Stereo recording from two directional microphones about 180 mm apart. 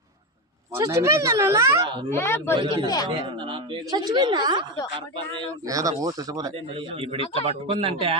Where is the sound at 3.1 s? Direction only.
30° right (ahead or behind).